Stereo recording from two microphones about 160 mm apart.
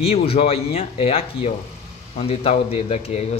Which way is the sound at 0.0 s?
40° left (ahead or behind).